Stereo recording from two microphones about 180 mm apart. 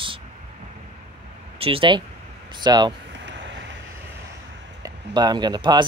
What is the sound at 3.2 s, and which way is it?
Vehicle, 90° right.